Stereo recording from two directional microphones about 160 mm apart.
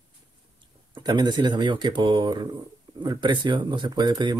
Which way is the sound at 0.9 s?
30° right (ahead or behind).